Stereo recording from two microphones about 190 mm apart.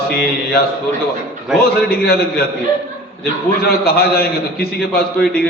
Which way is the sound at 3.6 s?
55° left (ahead or behind).